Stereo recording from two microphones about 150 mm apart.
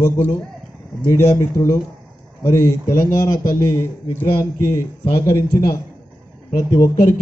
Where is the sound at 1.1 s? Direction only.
20° left (ahead or behind).